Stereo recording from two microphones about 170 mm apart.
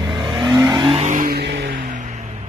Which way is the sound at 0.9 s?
50° right (ahead or behind).